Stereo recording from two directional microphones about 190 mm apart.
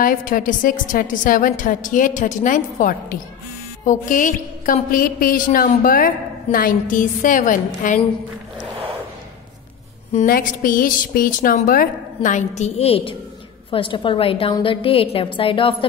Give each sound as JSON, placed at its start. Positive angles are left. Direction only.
{"t": 0.0, "sound": "a woman's voice", "side_deg": 45}
{"t": 10.2, "sound": "a woman's voice", "side_deg": 50}